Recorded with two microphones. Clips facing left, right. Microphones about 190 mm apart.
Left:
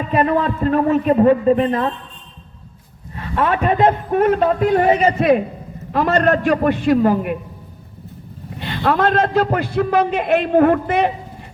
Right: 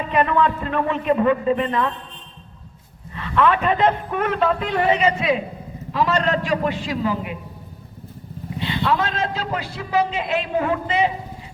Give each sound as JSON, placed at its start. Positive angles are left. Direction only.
{"t": 0.1, "sound": "a man's voice", "side_deg": 40}
{"t": 3.2, "sound": "a man's voice", "side_deg": 45}
{"t": 8.5, "sound": "a man's voice", "side_deg": 55}